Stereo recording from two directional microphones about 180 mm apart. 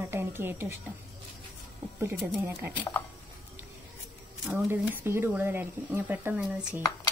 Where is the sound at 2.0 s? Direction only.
10° right (ahead or behind).